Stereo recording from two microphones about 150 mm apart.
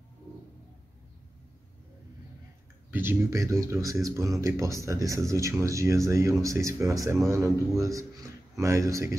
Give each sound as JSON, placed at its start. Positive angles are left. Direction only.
{"t": 2.9, "sound": "speech", "side_deg": -15}